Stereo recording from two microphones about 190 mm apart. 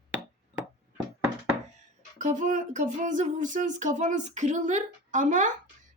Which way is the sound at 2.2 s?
40° right (ahead or behind).